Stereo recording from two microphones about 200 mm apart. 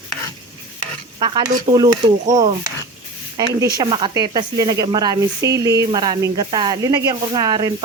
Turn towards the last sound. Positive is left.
turn(degrees=-20)  # may be behind; listen again after turning